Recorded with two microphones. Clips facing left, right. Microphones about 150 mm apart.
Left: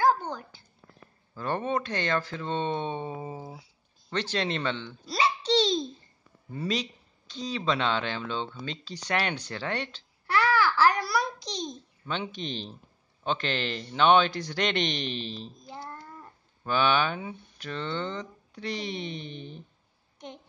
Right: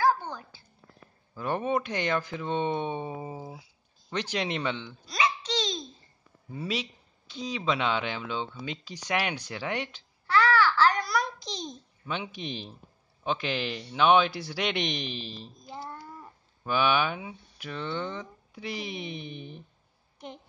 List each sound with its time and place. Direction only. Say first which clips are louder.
0.0 s a sound: left 1 dB; 20° left (ahead or behind)
1.3 s speech: right 1 dB; 10° right (ahead or behind)
5.0 s babbling: left 2 dB; 30° left (ahead or behind)
6.5 s speech: left 2 dB; 10° right (ahead or behind)
10.2 s babbling: right 1 dB; 10° left (ahead or behind); by 12.7 s 10° right (ahead or behind)
13.2 s a man's voice: even; 5° right (ahead or behind)